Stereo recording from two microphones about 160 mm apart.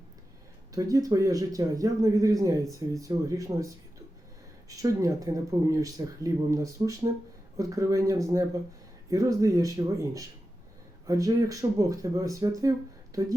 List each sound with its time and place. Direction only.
0.7 s speech: 20° right (ahead or behind)
4.7 s speech: 20° right (ahead or behind)